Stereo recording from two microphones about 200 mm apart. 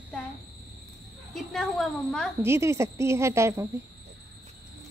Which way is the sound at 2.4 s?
15° right (ahead or behind).